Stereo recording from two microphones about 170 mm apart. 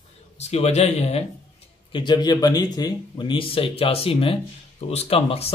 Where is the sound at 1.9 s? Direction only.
25° left (ahead or behind).